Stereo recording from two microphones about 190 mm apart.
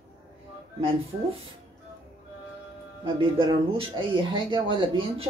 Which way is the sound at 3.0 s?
25° right (ahead or behind).